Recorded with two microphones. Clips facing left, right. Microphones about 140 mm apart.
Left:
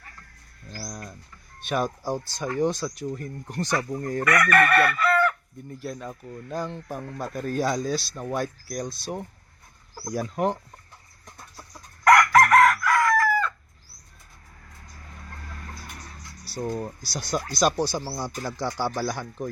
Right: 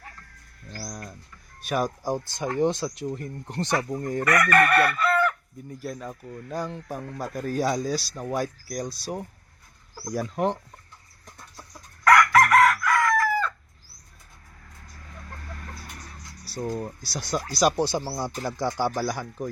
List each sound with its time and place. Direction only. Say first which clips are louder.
0.8 s bird: even; centre (ahead or behind)
1.6 s speech: even; 10° right (ahead or behind)
4.6 s chicken: even; centre (ahead or behind)
5.8 s speech: even; centre (ahead or behind)
12.2 s chicken: left 1 dB; centre (ahead or behind)
16.4 s a sound: left 1 dB; centre (ahead or behind)
16.8 s speech: even; centre (ahead or behind); by 18.9 s 15° right (ahead or behind)
18.9 s speech: right 1 dB; 5° right (ahead or behind)